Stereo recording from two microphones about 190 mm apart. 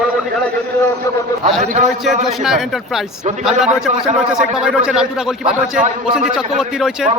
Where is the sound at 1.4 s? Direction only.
40° right (ahead or behind).